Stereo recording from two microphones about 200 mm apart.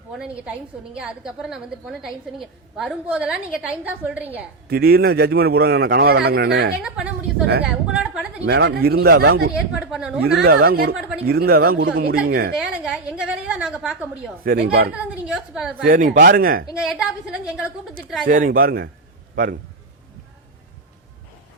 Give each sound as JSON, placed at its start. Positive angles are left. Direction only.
{"t": 0.1, "sound": "a woman's voice", "side_deg": -5}
{"t": 4.7, "sound": "a man's voice", "side_deg": -50}
{"t": 6.8, "sound": "a woman's voice", "side_deg": -5}
{"t": 8.4, "sound": "a man's voice", "side_deg": -55}
{"t": 9.6, "sound": "a woman's voice", "side_deg": -5}
{"t": 10.4, "sound": "a man's voice", "side_deg": -50}
{"t": 12.5, "sound": "a woman's voice", "side_deg": -5}
{"t": 14.4, "sound": "a man's voice", "side_deg": -50}
{"t": 14.9, "sound": "a woman's voice", "side_deg": -5}
{"t": 15.9, "sound": "a man's voice", "side_deg": -40}
{"t": 16.7, "sound": "a woman's voice", "side_deg": -5}
{"t": 18.3, "sound": "a man's voice", "side_deg": -45}